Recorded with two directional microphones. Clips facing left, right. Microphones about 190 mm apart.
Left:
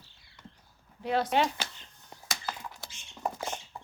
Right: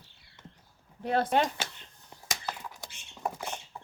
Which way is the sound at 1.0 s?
50° right (ahead or behind).